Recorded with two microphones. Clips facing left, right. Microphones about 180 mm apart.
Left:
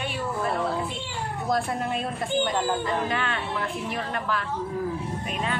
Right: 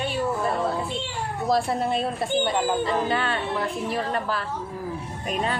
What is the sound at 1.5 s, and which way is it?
Speech, 35° right (ahead or behind).